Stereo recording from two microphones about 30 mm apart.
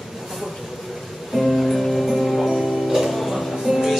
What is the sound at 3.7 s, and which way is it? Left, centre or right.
Music, centre.